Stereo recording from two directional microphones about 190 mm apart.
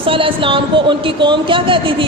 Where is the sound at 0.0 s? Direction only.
30° right (ahead or behind).